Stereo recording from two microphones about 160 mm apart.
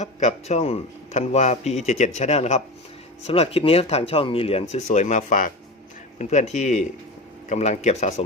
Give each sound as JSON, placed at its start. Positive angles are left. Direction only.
{"t": 0.0, "sound": "speech", "side_deg": 45}